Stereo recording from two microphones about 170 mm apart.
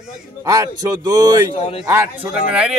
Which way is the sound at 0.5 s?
20° right (ahead or behind).